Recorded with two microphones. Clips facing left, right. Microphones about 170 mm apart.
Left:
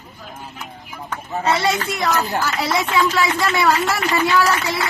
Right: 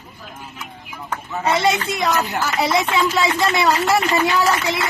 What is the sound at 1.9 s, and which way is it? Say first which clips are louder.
A woman's voice: even; 20° right (ahead or behind).